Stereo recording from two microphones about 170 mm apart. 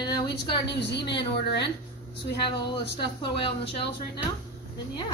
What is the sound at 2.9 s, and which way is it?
Speech, 30° left (ahead or behind).